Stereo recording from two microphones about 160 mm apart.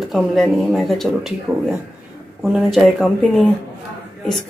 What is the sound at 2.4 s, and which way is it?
Speech, centre (ahead or behind).